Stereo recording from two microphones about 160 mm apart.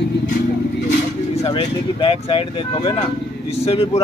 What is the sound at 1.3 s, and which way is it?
Speech, 35° left (ahead or behind).